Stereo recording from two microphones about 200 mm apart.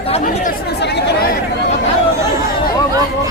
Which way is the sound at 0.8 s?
60° left (ahead or behind).